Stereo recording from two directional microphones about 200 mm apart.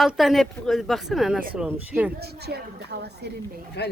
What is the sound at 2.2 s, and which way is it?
A woman's voice, 55° right (ahead or behind).